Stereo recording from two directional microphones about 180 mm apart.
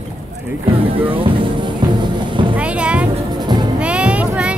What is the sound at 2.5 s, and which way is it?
Music, 5° right (ahead or behind).